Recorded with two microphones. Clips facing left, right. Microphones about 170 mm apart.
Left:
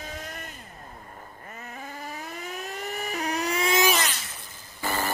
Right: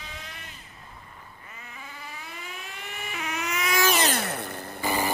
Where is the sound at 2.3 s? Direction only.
45° left (ahead or behind).